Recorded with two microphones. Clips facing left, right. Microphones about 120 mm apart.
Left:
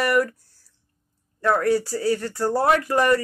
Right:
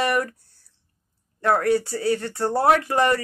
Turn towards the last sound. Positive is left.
turn(degrees=-25)  # may be behind; listen again after turning